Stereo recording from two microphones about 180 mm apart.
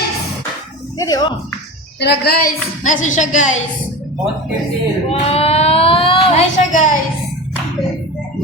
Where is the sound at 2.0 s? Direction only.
65° left (ahead or behind); by 3.4 s 45° left (ahead or behind).